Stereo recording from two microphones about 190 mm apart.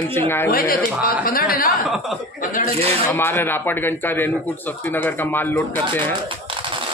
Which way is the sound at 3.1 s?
10° left (ahead or behind).